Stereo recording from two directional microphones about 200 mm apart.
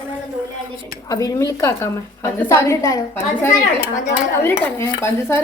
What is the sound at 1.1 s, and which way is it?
A woman's voice, 15° left (ahead or behind).